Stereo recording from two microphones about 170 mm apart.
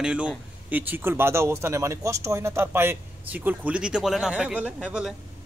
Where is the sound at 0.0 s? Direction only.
5° right (ahead or behind).